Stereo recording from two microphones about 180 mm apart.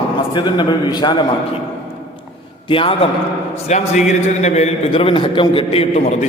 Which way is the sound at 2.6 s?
30° left (ahead or behind).